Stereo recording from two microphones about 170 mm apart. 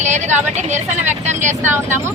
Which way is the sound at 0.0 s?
45° right (ahead or behind).